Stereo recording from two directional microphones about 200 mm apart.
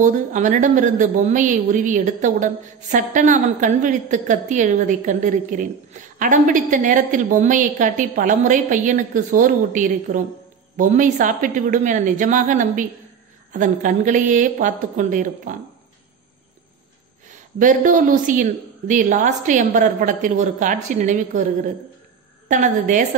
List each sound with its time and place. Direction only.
0.0 s a woman's voice: 40° right (ahead or behind)
17.6 s a woman's voice: 40° right (ahead or behind)
22.5 s a woman's voice: 40° right (ahead or behind)